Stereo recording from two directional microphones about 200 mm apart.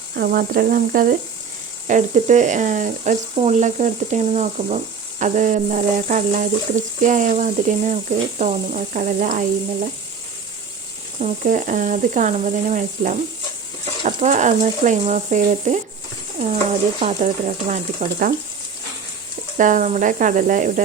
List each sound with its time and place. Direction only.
0.2 s speech: 45° right (ahead or behind)
11.2 s speech: 40° right (ahead or behind)
17.0 s speech: 35° right (ahead or behind)
19.5 s speech: 40° right (ahead or behind)